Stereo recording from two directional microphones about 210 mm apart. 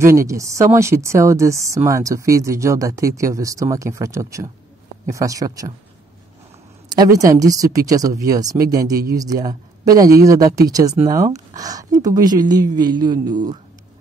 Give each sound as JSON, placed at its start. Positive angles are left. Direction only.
{"t": 0.0, "sound": "speech", "side_deg": -15}
{"t": 6.9, "sound": "speech", "side_deg": -20}